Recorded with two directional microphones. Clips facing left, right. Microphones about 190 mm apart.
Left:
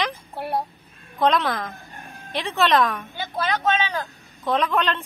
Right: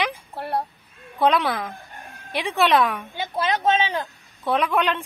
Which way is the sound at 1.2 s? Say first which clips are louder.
Right 1 dB; 10° right (ahead or behind).